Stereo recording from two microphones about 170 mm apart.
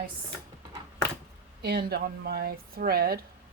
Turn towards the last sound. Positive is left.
turn(degrees=-65)  # may be behind; listen again after turning